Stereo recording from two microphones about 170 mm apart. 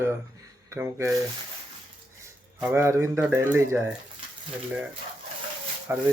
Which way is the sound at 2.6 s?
15° right (ahead or behind).